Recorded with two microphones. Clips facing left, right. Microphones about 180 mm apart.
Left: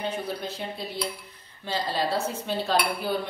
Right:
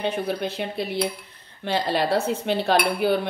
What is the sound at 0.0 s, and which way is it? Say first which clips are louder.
A woman's voice: right 5 dB; 70° right (ahead or behind).